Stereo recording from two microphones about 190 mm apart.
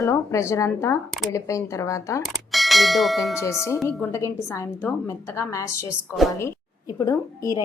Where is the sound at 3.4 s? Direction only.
15° left (ahead or behind).